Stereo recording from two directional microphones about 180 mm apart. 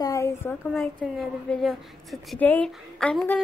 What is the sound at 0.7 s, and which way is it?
A woman's voice, centre (ahead or behind).